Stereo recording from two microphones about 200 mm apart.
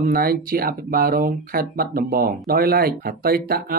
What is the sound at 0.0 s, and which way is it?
Speech, 45° right (ahead or behind).